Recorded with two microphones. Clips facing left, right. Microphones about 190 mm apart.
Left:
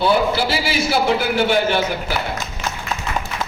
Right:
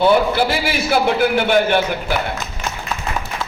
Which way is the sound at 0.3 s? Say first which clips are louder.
Right 2 dB; 55° right (ahead or behind).